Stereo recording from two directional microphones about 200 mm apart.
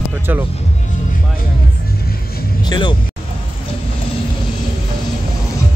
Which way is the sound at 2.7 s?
25° left (ahead or behind).